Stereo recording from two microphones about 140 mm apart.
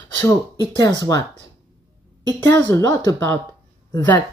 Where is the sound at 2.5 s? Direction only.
25° left (ahead or behind).